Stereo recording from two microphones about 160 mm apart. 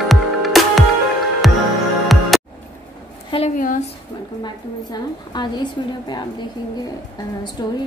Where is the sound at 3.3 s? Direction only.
35° left (ahead or behind).